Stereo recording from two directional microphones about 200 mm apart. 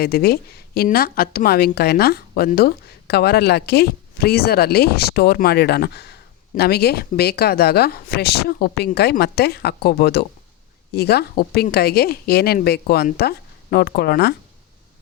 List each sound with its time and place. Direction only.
0.0 s a woman's voice: 50° left (ahead or behind)